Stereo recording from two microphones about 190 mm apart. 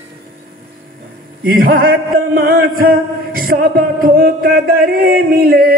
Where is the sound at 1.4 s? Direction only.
50° right (ahead or behind).